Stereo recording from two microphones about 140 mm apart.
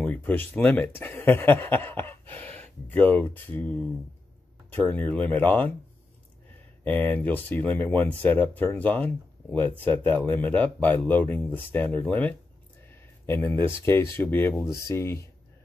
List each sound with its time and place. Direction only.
0.0 s speech: 10° left (ahead or behind)
6.8 s speech: 10° left (ahead or behind)